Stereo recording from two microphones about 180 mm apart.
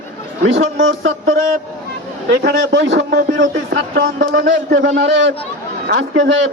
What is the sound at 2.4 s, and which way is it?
A man's voice, 80° right.